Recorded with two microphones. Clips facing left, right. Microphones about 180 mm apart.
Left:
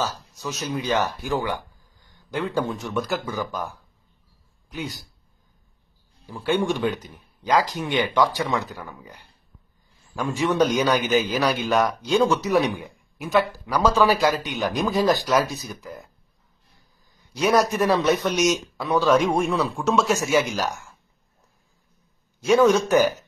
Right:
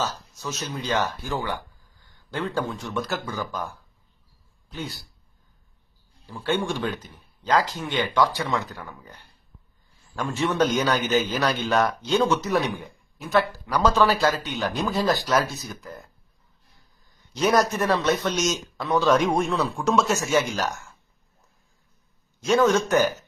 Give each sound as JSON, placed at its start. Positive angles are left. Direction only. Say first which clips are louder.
{"t": 0.0, "sound": "a man's voice", "louder": "left 1 dB", "side_deg": 15}
{"t": 6.4, "sound": "a man's voice", "louder": "left 3 dB", "side_deg": 15}
{"t": 15.8, "sound": "speech", "louder": "left 2 dB", "side_deg": 0}
{"t": 17.4, "sound": "speech", "louder": "left 1 dB", "side_deg": 0}
{"t": 17.6, "sound": "a man's voice", "louder": "left 3 dB", "side_deg": 15}
{"t": 22.5, "sound": "a man's voice", "louder": "left 3 dB", "side_deg": 10}